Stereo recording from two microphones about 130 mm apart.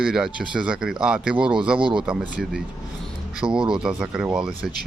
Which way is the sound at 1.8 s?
40° right (ahead or behind).